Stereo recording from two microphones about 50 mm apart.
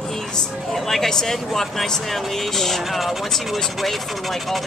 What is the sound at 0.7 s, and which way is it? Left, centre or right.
Speech, centre.